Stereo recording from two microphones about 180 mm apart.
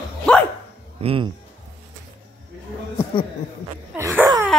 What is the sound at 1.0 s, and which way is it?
Speech, 30° right (ahead or behind).